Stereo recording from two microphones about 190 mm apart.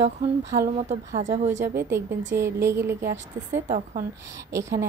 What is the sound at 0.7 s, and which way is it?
Speech, 40° right (ahead or behind).